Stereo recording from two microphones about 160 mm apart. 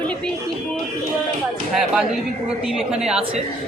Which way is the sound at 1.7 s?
5° right (ahead or behind).